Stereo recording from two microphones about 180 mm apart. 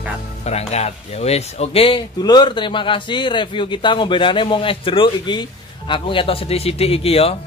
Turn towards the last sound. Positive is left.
turn(degrees=35)  # may be behind; listen again after turning